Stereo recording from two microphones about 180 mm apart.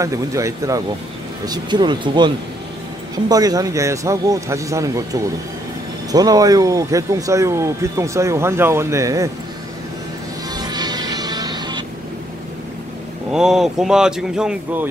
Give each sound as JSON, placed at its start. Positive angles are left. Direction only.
{"t": 0.0, "sound": "speech", "side_deg": -20}
{"t": 10.5, "sound": "music", "side_deg": -20}
{"t": 13.3, "sound": "speech", "side_deg": -5}